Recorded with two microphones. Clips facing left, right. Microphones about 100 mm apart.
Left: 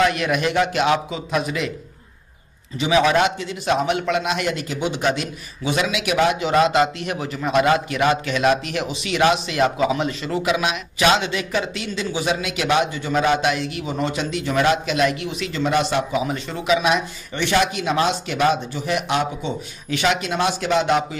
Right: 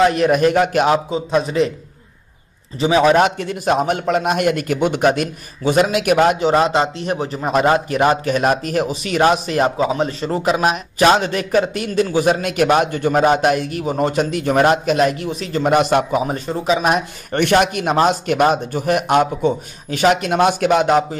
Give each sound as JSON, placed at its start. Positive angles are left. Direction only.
{"t": 0.0, "sound": "a man's voice", "side_deg": -40}
{"t": 2.8, "sound": "a man's voice", "side_deg": -35}
{"t": 6.5, "sound": "a man's voice", "side_deg": -30}